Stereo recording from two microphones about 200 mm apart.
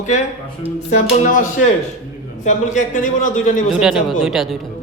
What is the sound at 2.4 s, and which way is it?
Speech, 40° left (ahead or behind).